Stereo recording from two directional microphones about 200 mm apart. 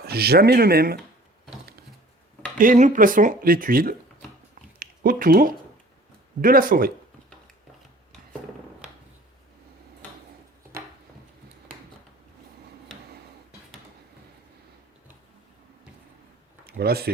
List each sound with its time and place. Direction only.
0.0 s speech: 50° right (ahead or behind)
2.6 s speech: 40° right (ahead or behind)
8.8 s a sound: 5° right (ahead or behind)
16.6 s speech: 50° right (ahead or behind)